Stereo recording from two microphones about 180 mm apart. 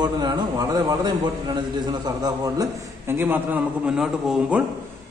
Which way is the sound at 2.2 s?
15° right (ahead or behind).